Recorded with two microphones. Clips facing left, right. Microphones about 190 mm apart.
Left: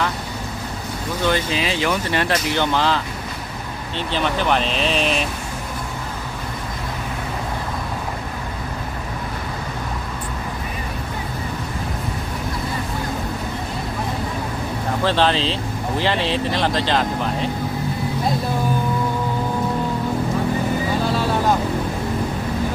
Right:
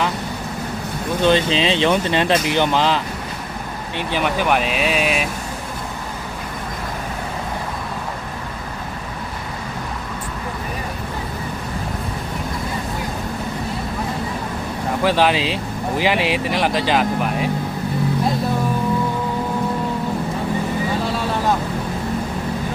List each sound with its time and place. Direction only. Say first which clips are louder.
1.2 s speech: right 5 dB; 20° right (ahead or behind)
15.0 s speech: right 2 dB; 10° right (ahead or behind)